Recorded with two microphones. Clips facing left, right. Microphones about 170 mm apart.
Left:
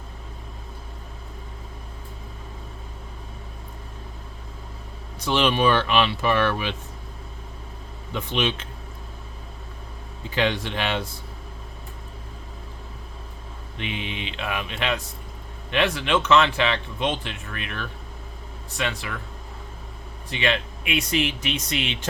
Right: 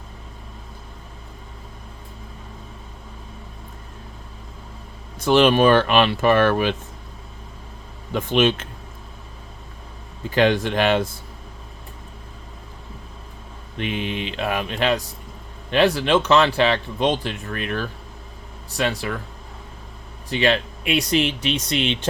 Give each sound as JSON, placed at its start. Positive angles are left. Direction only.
{"t": 5.2, "sound": "speech", "side_deg": -50}
{"t": 8.1, "sound": "speech", "side_deg": -50}
{"t": 10.2, "sound": "speech", "side_deg": -50}
{"t": 13.7, "sound": "speech", "side_deg": -45}
{"t": 20.3, "sound": "speech", "side_deg": -35}